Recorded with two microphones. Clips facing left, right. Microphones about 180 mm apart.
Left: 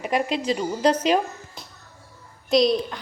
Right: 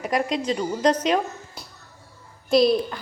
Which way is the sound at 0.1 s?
30° left (ahead or behind).